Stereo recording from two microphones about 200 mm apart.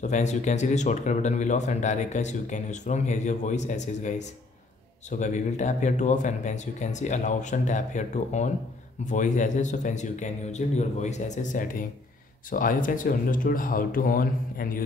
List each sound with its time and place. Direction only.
0.0 s speech: 35° left (ahead or behind)